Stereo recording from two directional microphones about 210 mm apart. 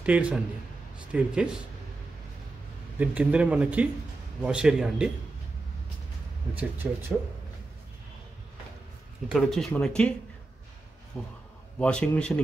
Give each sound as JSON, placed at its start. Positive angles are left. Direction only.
{"t": 0.0, "sound": "speech", "side_deg": -5}
{"t": 3.0, "sound": "speech", "side_deg": -5}
{"t": 6.5, "sound": "speech", "side_deg": -10}
{"t": 9.3, "sound": "speech", "side_deg": 0}
{"t": 11.1, "sound": "speech", "side_deg": 10}